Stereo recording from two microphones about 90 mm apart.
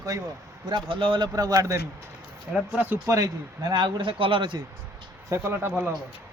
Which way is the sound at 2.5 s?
10° right (ahead or behind).